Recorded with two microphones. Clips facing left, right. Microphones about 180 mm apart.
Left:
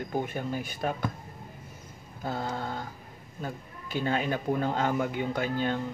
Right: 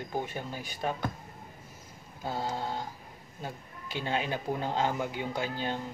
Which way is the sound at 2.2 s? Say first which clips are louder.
Left 1 dB; 55° left (ahead or behind).